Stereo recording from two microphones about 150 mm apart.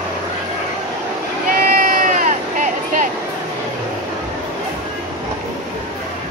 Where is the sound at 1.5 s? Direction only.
65° right (ahead or behind).